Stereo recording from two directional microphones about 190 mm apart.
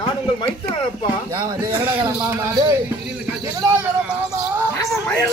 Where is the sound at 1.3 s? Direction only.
20° right (ahead or behind).